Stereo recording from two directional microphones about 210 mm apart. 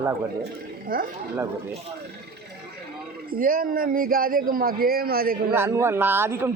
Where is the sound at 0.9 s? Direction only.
40° right (ahead or behind).